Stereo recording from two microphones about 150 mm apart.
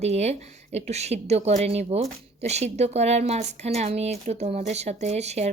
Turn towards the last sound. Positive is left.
turn(degrees=-45)  # may be behind; listen again after turning